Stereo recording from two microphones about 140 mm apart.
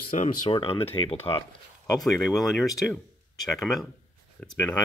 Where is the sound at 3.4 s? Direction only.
Centre (ahead or behind).